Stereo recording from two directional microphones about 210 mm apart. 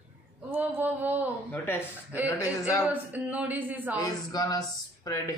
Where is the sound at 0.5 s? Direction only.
10° right (ahead or behind).